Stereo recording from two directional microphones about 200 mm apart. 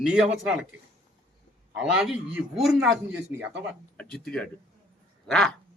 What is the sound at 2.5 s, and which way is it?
Speech, centre (ahead or behind).